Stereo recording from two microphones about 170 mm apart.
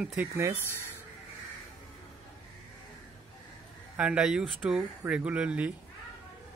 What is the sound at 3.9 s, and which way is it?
Speech, 5° right (ahead or behind).